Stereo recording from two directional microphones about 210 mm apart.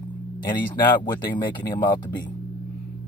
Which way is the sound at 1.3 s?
20° left (ahead or behind).